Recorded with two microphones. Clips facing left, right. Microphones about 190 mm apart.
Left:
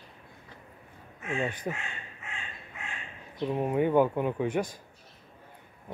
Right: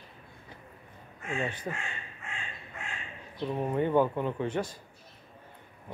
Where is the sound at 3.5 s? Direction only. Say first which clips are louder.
Left 2 dB; 10° left (ahead or behind).